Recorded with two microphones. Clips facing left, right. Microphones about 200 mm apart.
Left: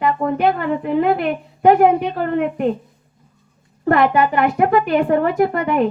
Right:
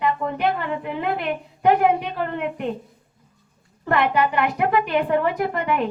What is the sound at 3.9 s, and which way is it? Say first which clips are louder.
Speech: left 5 dB; 45° left (ahead or behind).